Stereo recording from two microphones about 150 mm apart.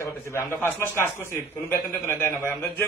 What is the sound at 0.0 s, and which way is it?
A man's voice, 20° left (ahead or behind).